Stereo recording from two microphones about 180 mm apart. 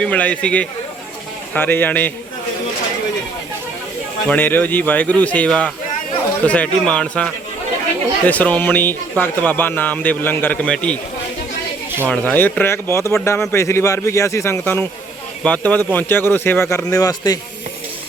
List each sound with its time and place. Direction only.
0.0 s speech: 10° left (ahead or behind)
4.3 s speech: 10° left (ahead or behind)
12.0 s speech: 10° left (ahead or behind)